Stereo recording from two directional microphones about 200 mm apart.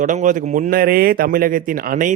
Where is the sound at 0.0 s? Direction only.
40° right (ahead or behind).